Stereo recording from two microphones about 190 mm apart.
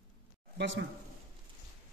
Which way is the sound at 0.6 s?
65° right (ahead or behind).